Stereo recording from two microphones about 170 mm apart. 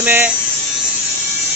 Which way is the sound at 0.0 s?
10° right (ahead or behind).